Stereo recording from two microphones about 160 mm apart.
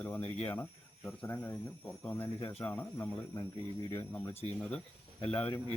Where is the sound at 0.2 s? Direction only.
40° left (ahead or behind).